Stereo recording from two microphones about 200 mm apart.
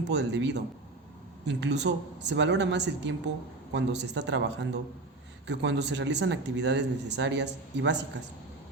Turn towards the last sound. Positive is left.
turn(degrees=-60)  # may be behind; listen again after turning